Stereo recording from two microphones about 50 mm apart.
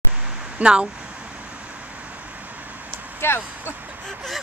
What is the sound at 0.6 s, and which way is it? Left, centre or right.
Speech, right.